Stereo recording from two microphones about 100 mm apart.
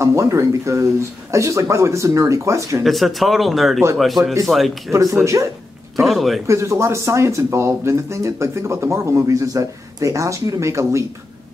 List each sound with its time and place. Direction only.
0.0 s speech: 30° right (ahead or behind)
2.8 s speech: centre (ahead or behind)
4.2 s speech: 35° right (ahead or behind)
4.5 s speech: centre (ahead or behind)
4.9 s speech: 30° right (ahead or behind)
5.9 s speech: centre (ahead or behind)
6.4 s speech: 30° right (ahead or behind)